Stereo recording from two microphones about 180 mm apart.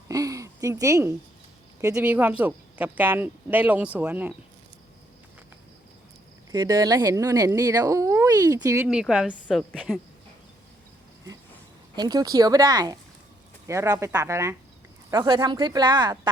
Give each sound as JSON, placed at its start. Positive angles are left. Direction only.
{"t": 0.1, "sound": "a sound", "side_deg": -20}
{"t": 2.0, "sound": "speech", "side_deg": -10}
{"t": 6.5, "sound": "speech", "side_deg": -20}
{"t": 8.9, "sound": "speech", "side_deg": -5}
{"t": 11.9, "sound": "speech", "side_deg": -20}